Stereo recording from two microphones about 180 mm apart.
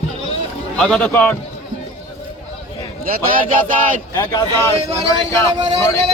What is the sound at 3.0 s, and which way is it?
Speech, 50° right (ahead or behind).